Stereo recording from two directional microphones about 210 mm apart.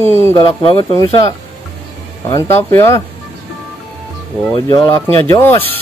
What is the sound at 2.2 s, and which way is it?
Speech, 15° left (ahead or behind).